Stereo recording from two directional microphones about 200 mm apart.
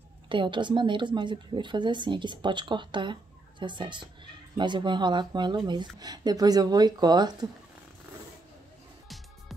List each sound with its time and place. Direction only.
0.3 s speech: 25° right (ahead or behind)